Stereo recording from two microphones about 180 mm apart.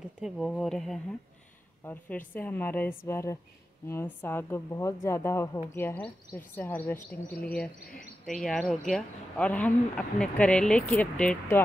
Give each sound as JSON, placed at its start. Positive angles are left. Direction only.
{"t": 0.2, "sound": "a woman's voice", "side_deg": 0}
{"t": 7.9, "sound": "speech", "side_deg": 50}
{"t": 8.4, "sound": "speech", "side_deg": 5}